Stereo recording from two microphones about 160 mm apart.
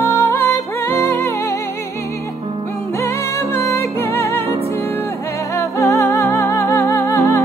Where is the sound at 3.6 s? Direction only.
20° left (ahead or behind).